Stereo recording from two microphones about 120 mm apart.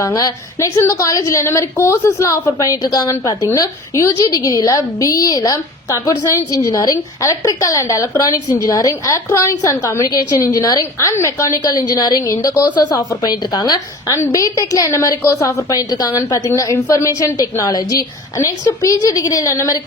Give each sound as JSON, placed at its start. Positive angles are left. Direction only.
{"t": 0.0, "sound": "a woman's voice", "side_deg": 30}
{"t": 12.6, "sound": "a woman's voice", "side_deg": 35}